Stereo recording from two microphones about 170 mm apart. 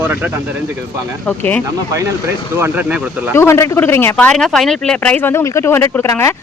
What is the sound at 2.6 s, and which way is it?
Speech, 10° right (ahead or behind).